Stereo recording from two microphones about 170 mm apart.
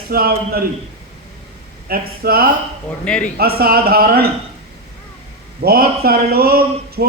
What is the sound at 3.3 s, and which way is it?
Speech, 65° right (ahead or behind).